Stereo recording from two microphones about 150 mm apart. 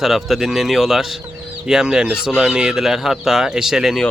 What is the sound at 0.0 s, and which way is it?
Speech, centre (ahead or behind).